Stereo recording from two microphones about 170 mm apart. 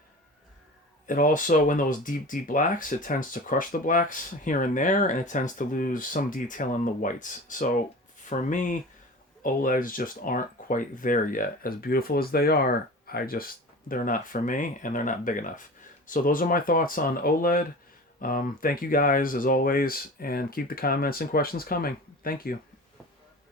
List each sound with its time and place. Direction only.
1.0 s speech: 50° left (ahead or behind)